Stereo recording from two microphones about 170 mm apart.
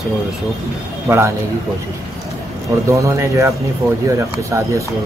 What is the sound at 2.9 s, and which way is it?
Speech, 20° right (ahead or behind).